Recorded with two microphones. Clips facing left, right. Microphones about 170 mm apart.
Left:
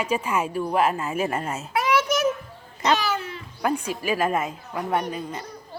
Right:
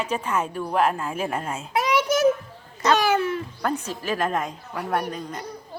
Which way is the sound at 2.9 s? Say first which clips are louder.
Right 6 dB; 50° right (ahead or behind).